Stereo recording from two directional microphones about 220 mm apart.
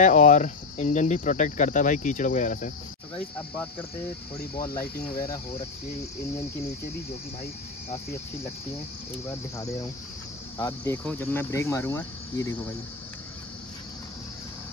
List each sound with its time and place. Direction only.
0.0 s speech: 35° left (ahead or behind)
5.1 s speech: 15° left (ahead or behind)
10.6 s speech: 10° left (ahead or behind)